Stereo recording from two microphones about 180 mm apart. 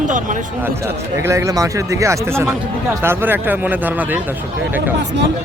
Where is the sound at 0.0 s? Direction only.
45° right (ahead or behind).